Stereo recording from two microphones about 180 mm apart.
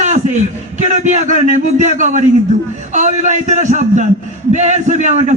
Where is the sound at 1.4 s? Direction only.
40° right (ahead or behind).